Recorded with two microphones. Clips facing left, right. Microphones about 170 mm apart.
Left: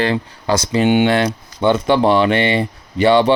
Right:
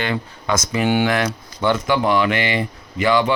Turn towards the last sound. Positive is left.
turn(degrees=30)  # may be behind; listen again after turning